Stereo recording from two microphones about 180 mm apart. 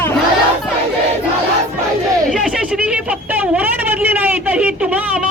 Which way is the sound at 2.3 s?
5° right (ahead or behind).